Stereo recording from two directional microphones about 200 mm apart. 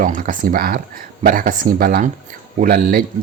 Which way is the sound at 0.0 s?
45° right (ahead or behind).